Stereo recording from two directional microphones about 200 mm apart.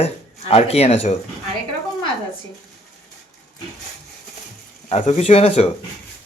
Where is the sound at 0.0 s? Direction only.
30° left (ahead or behind).